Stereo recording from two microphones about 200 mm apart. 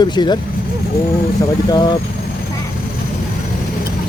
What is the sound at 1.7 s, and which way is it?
Speech, 20° left (ahead or behind).